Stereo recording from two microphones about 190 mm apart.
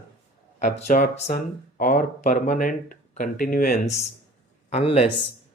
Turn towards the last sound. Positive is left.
turn(degrees=30)  # may be behind; listen again after turning